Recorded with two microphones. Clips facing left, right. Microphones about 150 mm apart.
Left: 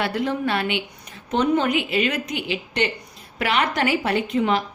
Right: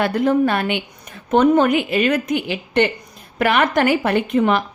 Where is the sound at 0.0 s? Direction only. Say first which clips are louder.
Right 7 dB; 45° right (ahead or behind).